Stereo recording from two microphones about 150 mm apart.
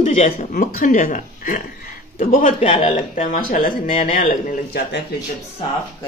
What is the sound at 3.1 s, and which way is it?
Speech, 55° left (ahead or behind).